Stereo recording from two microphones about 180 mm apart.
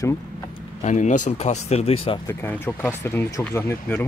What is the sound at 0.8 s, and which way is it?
Speech, 40° left (ahead or behind).